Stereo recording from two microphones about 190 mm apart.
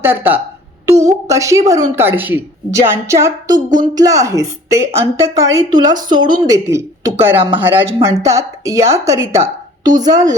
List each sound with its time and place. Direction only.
0.0 s a woman's voice: 10° right (ahead or behind)